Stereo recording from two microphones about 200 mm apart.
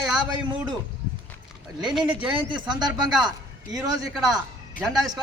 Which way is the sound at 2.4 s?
25° right (ahead or behind).